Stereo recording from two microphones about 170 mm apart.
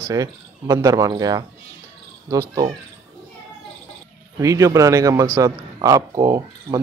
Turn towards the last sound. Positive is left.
turn(degrees=-20)  # may be behind; listen again after turning